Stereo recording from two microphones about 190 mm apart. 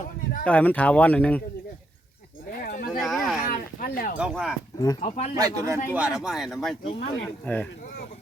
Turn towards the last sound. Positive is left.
turn(degrees=5)  # may be behind; listen again after turning